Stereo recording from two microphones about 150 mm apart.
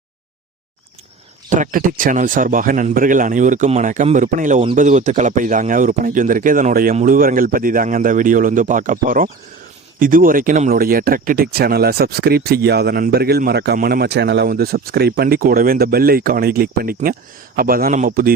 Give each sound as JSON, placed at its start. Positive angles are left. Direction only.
{"t": 1.5, "sound": "a man's voice", "side_deg": -60}